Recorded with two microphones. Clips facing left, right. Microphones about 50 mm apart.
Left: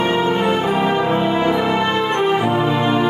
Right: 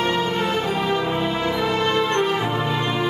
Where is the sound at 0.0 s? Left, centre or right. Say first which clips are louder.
Left 5 dB; centre.